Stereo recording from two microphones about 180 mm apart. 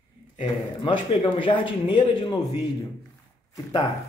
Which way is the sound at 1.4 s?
25° left (ahead or behind).